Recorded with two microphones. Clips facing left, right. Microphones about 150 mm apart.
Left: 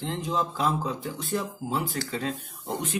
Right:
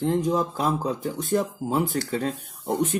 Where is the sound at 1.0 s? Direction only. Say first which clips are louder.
Right 6 dB; 45° right (ahead or behind).